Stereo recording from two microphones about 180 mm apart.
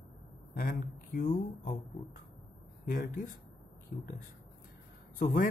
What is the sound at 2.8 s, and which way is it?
Speech, 50° left (ahead or behind).